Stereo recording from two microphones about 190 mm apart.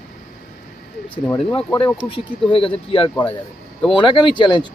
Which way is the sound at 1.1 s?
5° left (ahead or behind).